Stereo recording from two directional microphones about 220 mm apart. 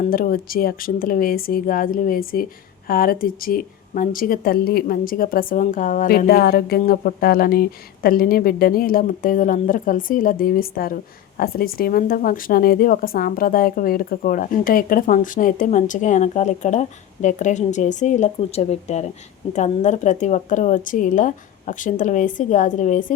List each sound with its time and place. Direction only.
0.0 s speech: 40° left (ahead or behind)